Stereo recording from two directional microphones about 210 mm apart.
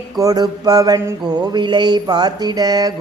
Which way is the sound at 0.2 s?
20° right (ahead or behind).